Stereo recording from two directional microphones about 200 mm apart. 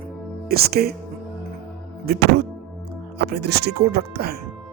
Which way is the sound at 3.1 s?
55° right (ahead or behind).